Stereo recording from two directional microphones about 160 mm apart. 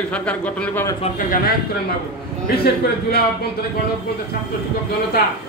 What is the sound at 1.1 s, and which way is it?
Speech, 60° left (ahead or behind).